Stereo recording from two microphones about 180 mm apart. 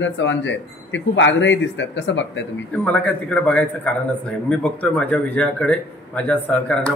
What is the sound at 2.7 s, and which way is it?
A man's voice, 5° left (ahead or behind).